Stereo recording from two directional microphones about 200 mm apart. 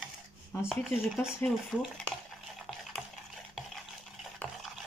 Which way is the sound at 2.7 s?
Centre (ahead or behind).